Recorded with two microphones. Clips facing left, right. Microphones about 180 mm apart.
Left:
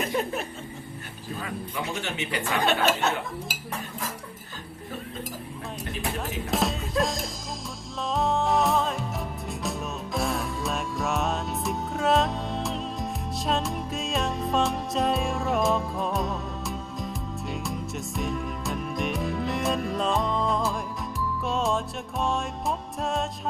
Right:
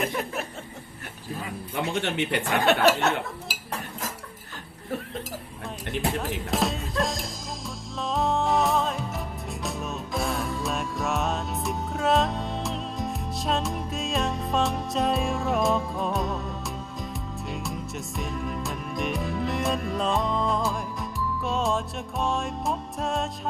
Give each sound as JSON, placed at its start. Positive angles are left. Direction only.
{"t": 1.7, "sound": "speech", "side_deg": -60}
{"t": 6.1, "sound": "music", "side_deg": 0}